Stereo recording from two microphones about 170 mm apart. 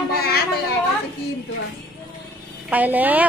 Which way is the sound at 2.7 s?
10° right (ahead or behind).